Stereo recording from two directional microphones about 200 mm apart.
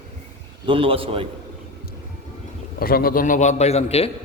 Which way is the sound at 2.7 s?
50° left (ahead or behind).